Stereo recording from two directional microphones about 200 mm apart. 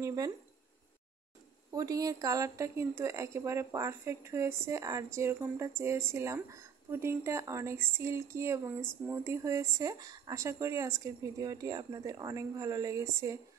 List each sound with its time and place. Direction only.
0.0 s speech: 20° right (ahead or behind)
1.7 s speech: 15° right (ahead or behind)